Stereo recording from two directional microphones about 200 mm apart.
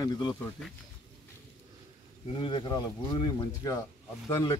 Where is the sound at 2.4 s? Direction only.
20° left (ahead or behind).